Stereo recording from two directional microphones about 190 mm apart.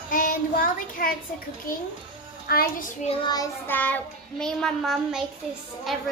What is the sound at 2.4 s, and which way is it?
Speech, 50° left (ahead or behind).